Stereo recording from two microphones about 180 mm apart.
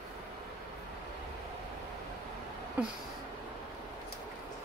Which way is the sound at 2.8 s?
10° right (ahead or behind).